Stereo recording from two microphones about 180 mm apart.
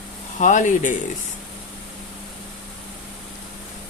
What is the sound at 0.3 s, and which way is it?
Speech, 45° left (ahead or behind).